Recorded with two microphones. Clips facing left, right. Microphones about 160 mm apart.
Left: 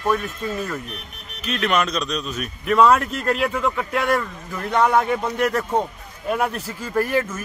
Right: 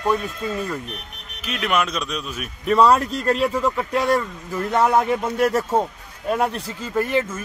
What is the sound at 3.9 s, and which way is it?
Speech, 35° right (ahead or behind).